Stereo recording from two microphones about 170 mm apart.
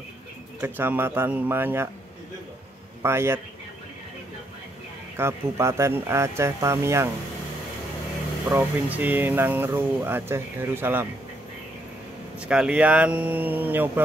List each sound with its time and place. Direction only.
0.6 s speech: 10° right (ahead or behind)
3.0 s a man's voice: 15° right (ahead or behind)
5.1 s speech: 15° right (ahead or behind)
8.5 s speech: 10° right (ahead or behind)
12.4 s speech: 5° right (ahead or behind)